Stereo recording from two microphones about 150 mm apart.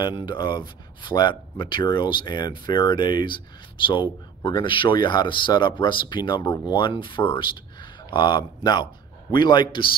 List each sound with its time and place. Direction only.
0.0 s speech: 30° left (ahead or behind)